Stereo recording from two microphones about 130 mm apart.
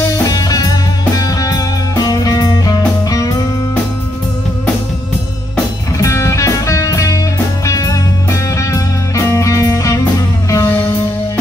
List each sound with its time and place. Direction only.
0.3 s music: 30° left (ahead or behind)
5.9 s music: 25° left (ahead or behind)